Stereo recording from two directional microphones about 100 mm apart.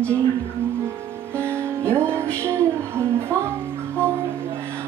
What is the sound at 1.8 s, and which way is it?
Music, 25° right (ahead or behind).